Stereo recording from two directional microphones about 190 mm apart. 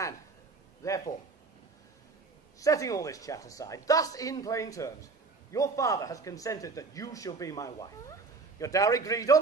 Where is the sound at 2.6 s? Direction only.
15° left (ahead or behind).